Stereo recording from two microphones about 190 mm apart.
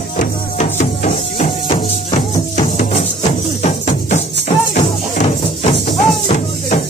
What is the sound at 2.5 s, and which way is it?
Music, 40° left (ahead or behind).